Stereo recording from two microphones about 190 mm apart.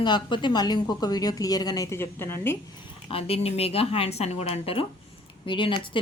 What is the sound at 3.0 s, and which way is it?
Speech, 30° left (ahead or behind).